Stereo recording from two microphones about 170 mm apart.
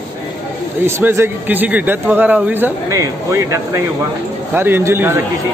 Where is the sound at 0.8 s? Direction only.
15° right (ahead or behind).